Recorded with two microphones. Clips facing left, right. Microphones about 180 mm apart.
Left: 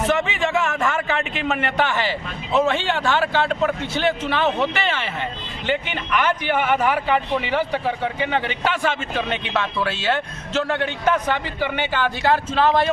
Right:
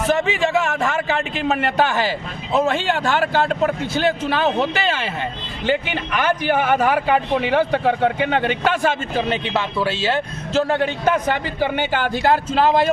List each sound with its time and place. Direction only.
0.1 s a man's voice: 35° right (ahead or behind)
9.5 s speech: 5° right (ahead or behind)
9.8 s a man's voice: 30° right (ahead or behind)